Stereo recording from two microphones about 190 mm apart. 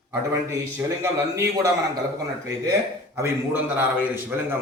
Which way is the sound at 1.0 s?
15° right (ahead or behind).